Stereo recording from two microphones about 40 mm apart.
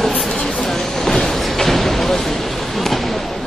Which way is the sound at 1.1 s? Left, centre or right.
Centre.